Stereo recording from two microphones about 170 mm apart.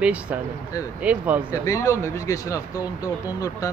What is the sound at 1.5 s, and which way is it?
Speech, 20° left (ahead or behind).